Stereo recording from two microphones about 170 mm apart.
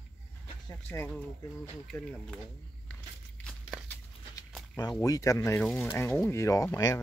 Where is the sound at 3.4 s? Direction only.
5° left (ahead or behind).